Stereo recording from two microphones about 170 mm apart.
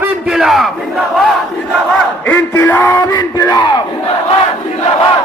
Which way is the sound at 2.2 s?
10° left (ahead or behind).